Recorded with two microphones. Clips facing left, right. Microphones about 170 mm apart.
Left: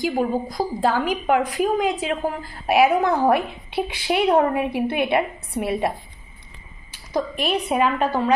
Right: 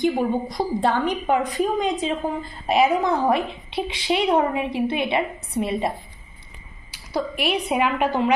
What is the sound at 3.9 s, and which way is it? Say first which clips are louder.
A woman's voice: left 1 dB; 55° left (ahead or behind).